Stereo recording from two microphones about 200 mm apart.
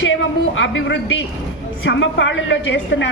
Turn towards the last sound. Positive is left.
turn(degrees=65)  # may be behind; listen again after turning